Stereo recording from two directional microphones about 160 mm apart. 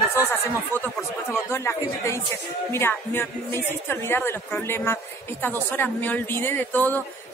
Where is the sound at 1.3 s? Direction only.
15° left (ahead or behind).